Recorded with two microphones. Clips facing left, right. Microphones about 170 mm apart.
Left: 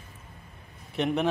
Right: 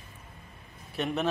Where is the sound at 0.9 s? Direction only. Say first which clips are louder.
Left 4 dB; 15° left (ahead or behind).